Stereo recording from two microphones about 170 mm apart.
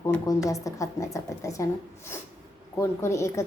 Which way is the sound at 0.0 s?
15° left (ahead or behind).